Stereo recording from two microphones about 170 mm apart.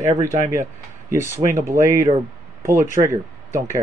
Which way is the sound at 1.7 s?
15° right (ahead or behind).